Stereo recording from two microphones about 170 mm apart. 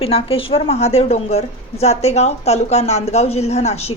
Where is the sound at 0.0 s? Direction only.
35° left (ahead or behind).